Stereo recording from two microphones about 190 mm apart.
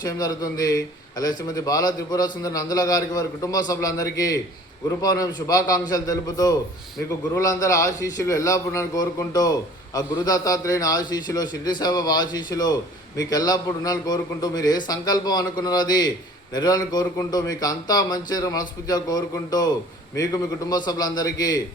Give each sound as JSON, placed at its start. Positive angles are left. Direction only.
{"t": 0.0, "sound": "a man's voice", "side_deg": 20}